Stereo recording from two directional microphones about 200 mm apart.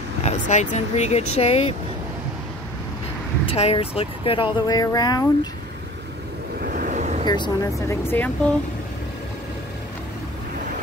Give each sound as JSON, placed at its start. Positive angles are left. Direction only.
{"t": 0.2, "sound": "speech", "side_deg": 35}
{"t": 3.4, "sound": "speech", "side_deg": 30}
{"t": 6.6, "sound": "vehicle", "side_deg": -45}
{"t": 7.2, "sound": "speech", "side_deg": 20}